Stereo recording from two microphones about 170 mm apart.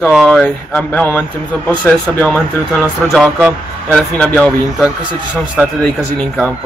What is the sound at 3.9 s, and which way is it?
Speech, 5° left (ahead or behind).